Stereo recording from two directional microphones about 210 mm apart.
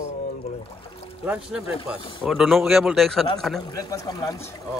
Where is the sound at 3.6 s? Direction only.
15° left (ahead or behind).